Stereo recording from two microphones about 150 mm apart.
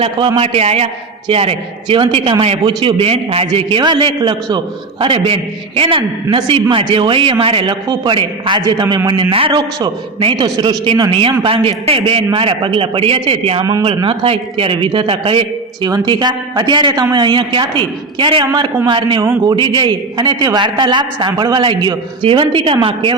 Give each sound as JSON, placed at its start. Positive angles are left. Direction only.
{"t": 0.3, "sound": "a man's voice", "side_deg": -40}